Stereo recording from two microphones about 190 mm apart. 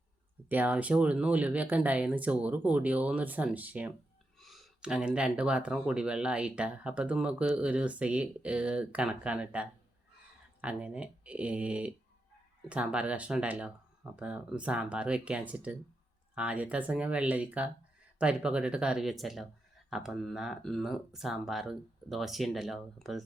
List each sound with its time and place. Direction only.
0.4 s speech: 10° right (ahead or behind)